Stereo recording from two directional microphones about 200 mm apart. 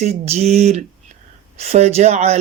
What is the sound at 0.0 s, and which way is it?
Speech, 35° right (ahead or behind).